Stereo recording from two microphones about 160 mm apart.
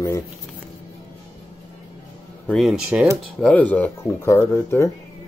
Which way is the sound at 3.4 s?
10° left (ahead or behind).